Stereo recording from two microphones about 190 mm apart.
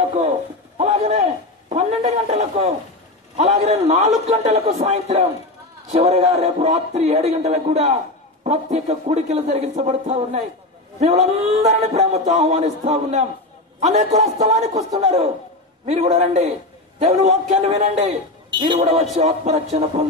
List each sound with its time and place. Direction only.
0.7 s a sound: 35° right (ahead or behind)
1.7 s a man's voice: 35° right (ahead or behind)
19.1 s a man's voice: 35° right (ahead or behind)